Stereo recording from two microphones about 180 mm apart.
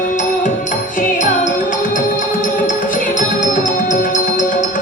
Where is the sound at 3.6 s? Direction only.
45° left (ahead or behind).